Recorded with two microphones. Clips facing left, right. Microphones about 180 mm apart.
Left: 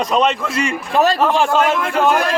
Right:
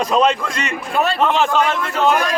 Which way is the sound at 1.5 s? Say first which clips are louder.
Left 2 dB; 50° left (ahead or behind).